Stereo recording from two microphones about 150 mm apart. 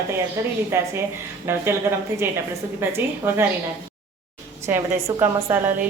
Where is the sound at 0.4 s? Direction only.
20° right (ahead or behind).